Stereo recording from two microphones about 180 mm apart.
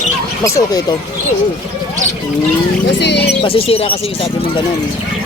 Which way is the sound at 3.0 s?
70° left (ahead or behind).